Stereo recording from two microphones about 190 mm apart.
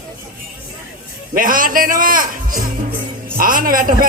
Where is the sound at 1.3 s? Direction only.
45° right (ahead or behind).